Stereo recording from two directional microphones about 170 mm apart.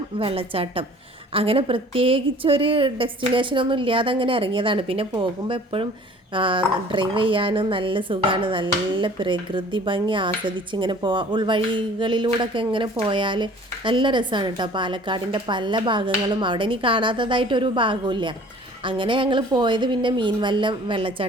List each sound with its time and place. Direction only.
0.2 s a woman's voice: 30° right (ahead or behind)